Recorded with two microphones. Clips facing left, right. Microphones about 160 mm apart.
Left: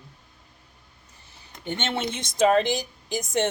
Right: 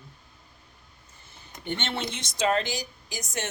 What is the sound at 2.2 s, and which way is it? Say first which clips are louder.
A woman's voice: left 6 dB; 55° left (ahead or behind).